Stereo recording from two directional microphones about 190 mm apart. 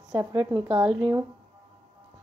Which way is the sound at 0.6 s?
5° right (ahead or behind).